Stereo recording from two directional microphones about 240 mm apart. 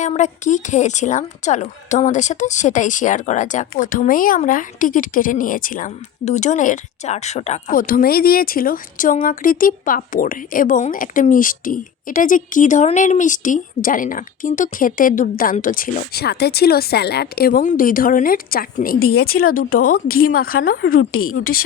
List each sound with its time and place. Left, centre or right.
0.0 s a woman's voice: left
20.1 s a woman's voice: left
20.3 s a woman's voice: left
21.1 s a woman's voice: left
21.3 s a woman's voice: left